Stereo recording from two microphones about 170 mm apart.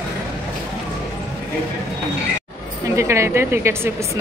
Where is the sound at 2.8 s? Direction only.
15° right (ahead or behind).